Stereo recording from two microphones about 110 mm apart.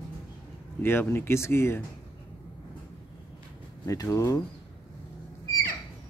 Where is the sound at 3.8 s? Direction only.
30° left (ahead or behind).